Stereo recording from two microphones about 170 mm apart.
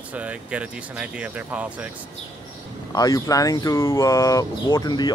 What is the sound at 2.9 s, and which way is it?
Speech, 20° left (ahead or behind).